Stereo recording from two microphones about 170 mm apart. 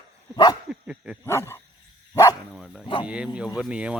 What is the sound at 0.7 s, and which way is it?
Dog, 5° right (ahead or behind).